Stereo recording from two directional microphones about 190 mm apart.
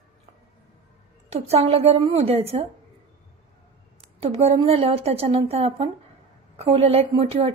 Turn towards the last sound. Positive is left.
turn(degrees=-30)  # may be behind; listen again after turning